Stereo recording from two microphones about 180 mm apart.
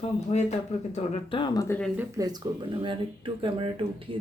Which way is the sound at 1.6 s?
10° left (ahead or behind).